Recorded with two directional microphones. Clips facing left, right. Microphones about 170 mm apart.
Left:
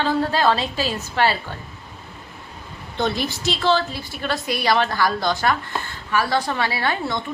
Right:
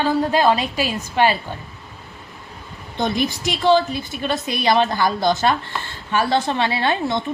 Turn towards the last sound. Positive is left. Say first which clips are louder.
# right 3 dB
turn(degrees=-20)  # may be behind; listen again after turning